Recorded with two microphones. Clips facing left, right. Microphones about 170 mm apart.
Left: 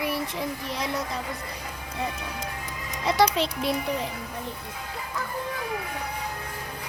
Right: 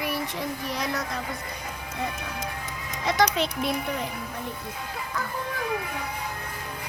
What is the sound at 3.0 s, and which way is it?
Child singing, 30° left (ahead or behind).